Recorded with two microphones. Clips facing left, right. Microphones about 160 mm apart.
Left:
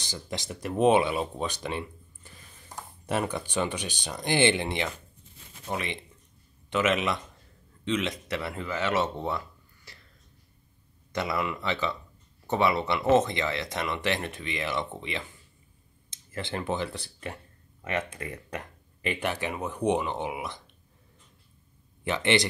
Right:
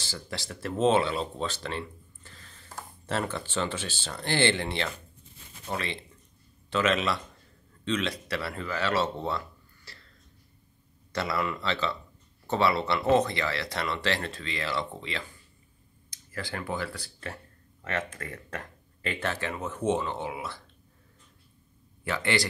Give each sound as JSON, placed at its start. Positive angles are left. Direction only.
{"t": 0.0, "sound": "speech", "side_deg": 20}
{"t": 9.9, "sound": "a sound", "side_deg": 20}
{"t": 11.1, "sound": "speech", "side_deg": 15}
{"t": 22.0, "sound": "speech", "side_deg": 20}